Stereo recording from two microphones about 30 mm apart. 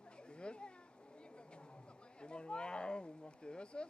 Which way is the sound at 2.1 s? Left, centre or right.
Left.